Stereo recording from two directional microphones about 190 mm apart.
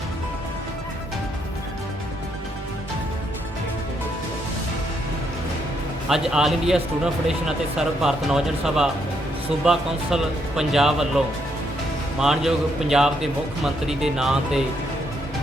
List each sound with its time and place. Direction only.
6.1 s speech: centre (ahead or behind)
12.2 s speech: centre (ahead or behind)